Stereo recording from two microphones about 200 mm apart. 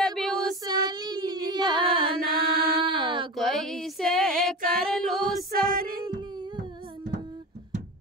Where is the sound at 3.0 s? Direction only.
25° right (ahead or behind).